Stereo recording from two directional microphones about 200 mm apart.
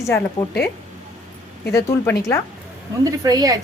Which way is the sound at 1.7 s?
15° left (ahead or behind).